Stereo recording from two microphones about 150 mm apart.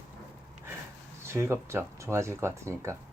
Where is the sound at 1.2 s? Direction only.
15° right (ahead or behind).